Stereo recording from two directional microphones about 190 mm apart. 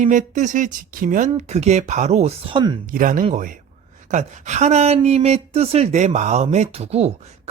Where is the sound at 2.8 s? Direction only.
45° right (ahead or behind).